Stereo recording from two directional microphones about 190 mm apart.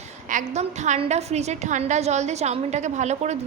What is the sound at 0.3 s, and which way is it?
A woman's voice, 40° right (ahead or behind).